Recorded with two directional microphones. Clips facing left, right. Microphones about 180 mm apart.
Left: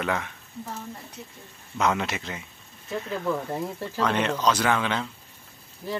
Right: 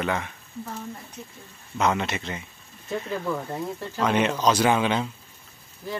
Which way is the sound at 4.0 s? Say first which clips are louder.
Right 2 dB; 15° right (ahead or behind).